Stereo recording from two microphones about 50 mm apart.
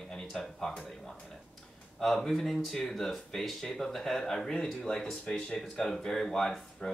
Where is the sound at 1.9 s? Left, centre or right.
Centre.